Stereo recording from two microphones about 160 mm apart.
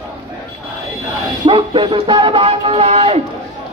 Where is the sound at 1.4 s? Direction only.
30° right (ahead or behind).